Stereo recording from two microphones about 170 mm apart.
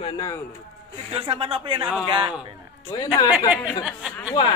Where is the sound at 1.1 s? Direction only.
35° right (ahead or behind).